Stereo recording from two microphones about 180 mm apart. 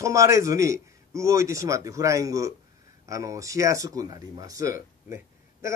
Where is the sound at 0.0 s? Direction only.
15° right (ahead or behind).